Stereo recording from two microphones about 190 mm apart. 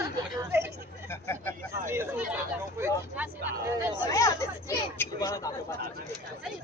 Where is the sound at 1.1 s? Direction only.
15° left (ahead or behind).